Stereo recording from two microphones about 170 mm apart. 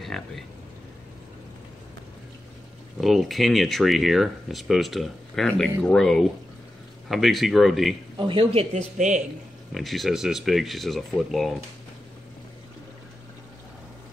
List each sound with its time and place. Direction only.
0.0 s a sound: centre (ahead or behind)
3.0 s speech: centre (ahead or behind)
8.2 s speech: 30° right (ahead or behind)
8.7 s speech: 45° right (ahead or behind)
9.8 s speech: centre (ahead or behind)